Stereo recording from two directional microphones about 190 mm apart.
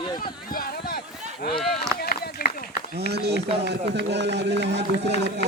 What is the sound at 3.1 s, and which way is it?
Speech, 60° right (ahead or behind).